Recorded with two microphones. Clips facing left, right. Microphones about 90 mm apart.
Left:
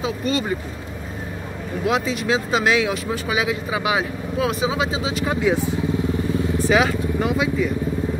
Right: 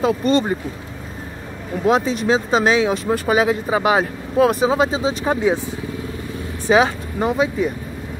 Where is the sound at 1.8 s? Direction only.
40° right (ahead or behind).